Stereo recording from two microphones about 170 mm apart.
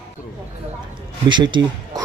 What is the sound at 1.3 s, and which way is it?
Speech, 25° right (ahead or behind).